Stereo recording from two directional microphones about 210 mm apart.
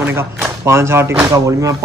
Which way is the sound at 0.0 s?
10° right (ahead or behind).